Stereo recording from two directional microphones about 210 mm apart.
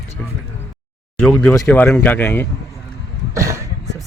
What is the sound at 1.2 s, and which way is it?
Speech, 10° left (ahead or behind).